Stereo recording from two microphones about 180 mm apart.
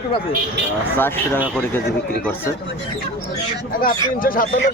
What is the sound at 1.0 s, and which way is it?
Speech, 10° left (ahead or behind).